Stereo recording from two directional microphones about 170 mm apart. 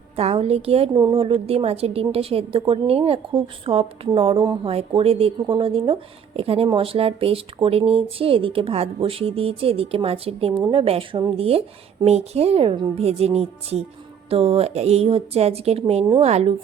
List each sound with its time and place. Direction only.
0.2 s a woman's voice: 35° right (ahead or behind)